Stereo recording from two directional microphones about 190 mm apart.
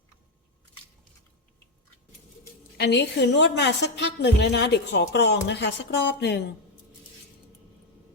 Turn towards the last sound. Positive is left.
turn(degrees=65)  # may be behind; listen again after turning